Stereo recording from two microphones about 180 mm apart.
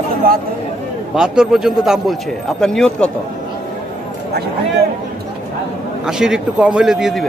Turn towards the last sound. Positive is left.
turn(degrees=0)  # may be behind; listen again after turning